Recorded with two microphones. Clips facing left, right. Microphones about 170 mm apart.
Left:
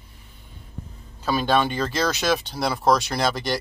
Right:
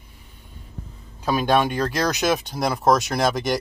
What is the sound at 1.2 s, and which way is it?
Speech, 15° right (ahead or behind).